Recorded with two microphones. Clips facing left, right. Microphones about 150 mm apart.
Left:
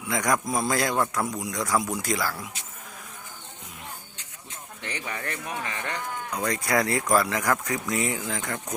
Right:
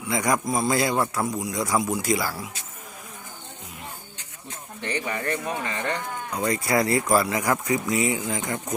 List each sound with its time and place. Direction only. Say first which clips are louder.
0.0 s a man's voice: right 2 dB; 5° right (ahead or behind)
5.0 s a man's voice: right 5 dB; centre (ahead or behind)